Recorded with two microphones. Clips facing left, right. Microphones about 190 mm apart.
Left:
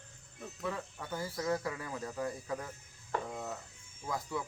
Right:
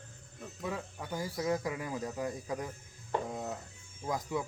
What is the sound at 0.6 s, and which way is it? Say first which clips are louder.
Speech: right 1 dB; 15° right (ahead or behind).